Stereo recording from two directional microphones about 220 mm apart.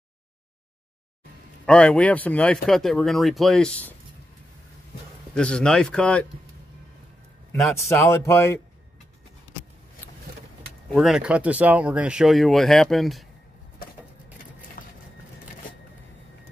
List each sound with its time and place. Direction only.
1.7 s speech: 5° left (ahead or behind)
5.3 s speech: 5° left (ahead or behind)
7.9 s speech: 10° left (ahead or behind)
10.9 s speech: centre (ahead or behind)
14.8 s printer: 40° left (ahead or behind)